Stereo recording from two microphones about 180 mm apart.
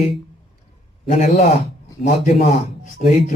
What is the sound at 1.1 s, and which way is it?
Speech, 40° left (ahead or behind).